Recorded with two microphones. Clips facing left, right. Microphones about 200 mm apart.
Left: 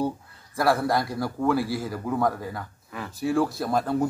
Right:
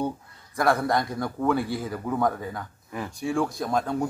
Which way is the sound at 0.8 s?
5° left (ahead or behind).